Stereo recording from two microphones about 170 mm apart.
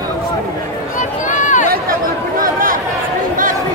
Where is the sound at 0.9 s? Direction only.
45° left (ahead or behind).